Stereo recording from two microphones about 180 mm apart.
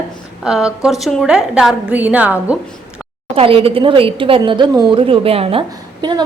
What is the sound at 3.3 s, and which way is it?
A woman's voice, 30° right (ahead or behind).